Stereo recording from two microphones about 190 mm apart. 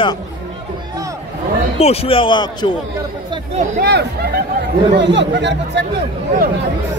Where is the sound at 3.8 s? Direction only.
60° right (ahead or behind).